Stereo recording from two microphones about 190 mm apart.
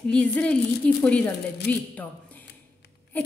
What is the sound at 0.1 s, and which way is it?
A woman's voice, 5° left (ahead or behind).